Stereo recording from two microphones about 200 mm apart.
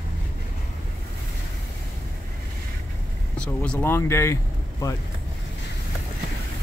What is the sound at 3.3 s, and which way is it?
Speech, 5° left (ahead or behind).